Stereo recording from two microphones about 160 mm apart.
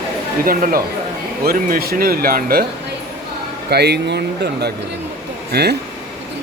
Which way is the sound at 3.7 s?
90° right.